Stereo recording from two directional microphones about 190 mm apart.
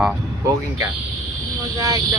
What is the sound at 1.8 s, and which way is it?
Speech, 20° right (ahead or behind).